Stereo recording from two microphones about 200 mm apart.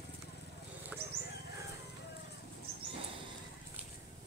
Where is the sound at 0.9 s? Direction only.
5° right (ahead or behind).